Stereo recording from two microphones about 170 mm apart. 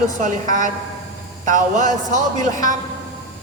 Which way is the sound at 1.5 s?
50° right (ahead or behind).